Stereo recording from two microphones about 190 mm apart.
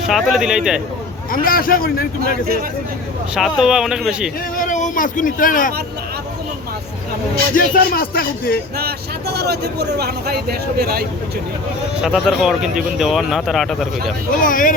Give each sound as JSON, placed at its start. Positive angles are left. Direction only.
{"t": 0.0, "sound": "speech", "side_deg": 0}
{"t": 1.5, "sound": "speech", "side_deg": 50}
{"t": 3.3, "sound": "speech", "side_deg": -5}
{"t": 4.6, "sound": "speech", "side_deg": 45}
{"t": 7.5, "sound": "speech", "side_deg": 50}
{"t": 9.3, "sound": "a man's voice", "side_deg": -60}
{"t": 12.0, "sound": "speech", "side_deg": 0}
{"t": 14.4, "sound": "speech", "side_deg": 45}